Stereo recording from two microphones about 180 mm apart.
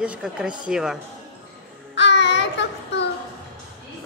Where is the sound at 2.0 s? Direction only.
75° left (ahead or behind).